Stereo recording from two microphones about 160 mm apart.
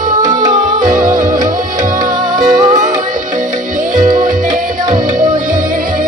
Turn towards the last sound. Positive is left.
turn(degrees=-55)  # may be behind; listen again after turning